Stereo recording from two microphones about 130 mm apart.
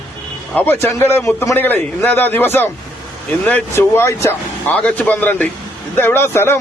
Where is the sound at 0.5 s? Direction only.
15° left (ahead or behind).